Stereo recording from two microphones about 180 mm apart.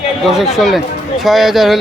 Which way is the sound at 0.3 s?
Centre (ahead or behind).